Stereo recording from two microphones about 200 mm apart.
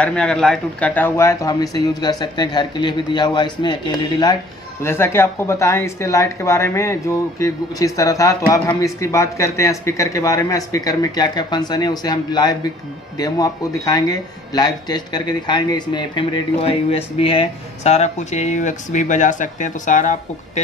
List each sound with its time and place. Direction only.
0.0 s speech: 5° left (ahead or behind); by 20.6 s 40° left (ahead or behind)